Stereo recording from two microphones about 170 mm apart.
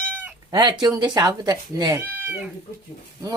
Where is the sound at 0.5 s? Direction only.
25° right (ahead or behind).